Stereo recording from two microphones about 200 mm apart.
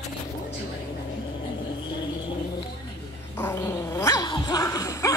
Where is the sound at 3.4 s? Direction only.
15° left (ahead or behind).